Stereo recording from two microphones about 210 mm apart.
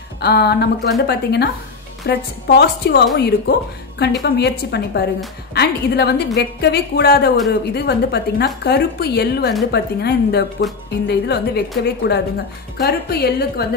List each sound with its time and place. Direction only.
0.2 s speech: 50° left (ahead or behind)